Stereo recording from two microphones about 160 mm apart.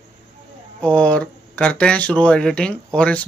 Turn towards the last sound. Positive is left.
turn(degrees=5)  # may be behind; listen again after turning